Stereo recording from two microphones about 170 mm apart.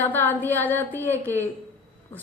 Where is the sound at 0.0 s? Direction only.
10° left (ahead or behind).